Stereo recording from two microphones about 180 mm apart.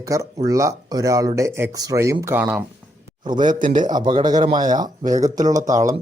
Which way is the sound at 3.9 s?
25° right (ahead or behind).